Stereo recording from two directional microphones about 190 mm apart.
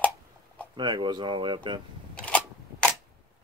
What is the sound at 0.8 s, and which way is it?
Speech, 20° right (ahead or behind).